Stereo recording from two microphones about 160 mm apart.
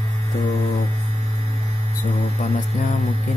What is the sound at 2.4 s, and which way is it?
Mantra, 45° left (ahead or behind).